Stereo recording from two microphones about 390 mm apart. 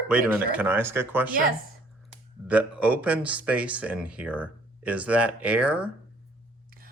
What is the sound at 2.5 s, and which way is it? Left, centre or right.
Speech, centre.